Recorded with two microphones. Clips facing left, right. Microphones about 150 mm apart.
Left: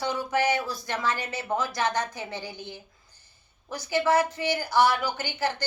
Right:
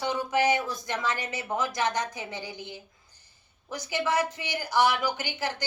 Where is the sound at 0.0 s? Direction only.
20° right (ahead or behind).